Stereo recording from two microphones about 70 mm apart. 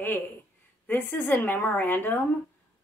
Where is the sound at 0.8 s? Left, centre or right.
Left.